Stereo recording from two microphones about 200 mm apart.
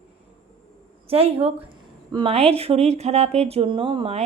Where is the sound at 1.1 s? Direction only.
30° right (ahead or behind).